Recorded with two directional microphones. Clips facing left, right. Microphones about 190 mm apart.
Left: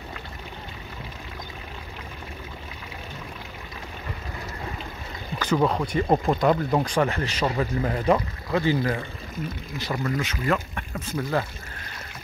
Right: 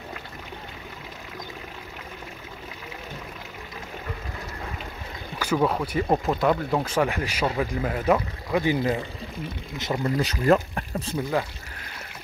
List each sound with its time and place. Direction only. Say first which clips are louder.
5.4 s speech: left 1 dB; 5° right (ahead or behind)
10.1 s speech: right 7 dB; 40° right (ahead or behind)